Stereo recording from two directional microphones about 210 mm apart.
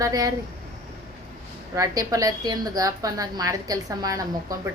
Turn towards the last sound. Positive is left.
turn(degrees=-15)  # may be behind; listen again after turning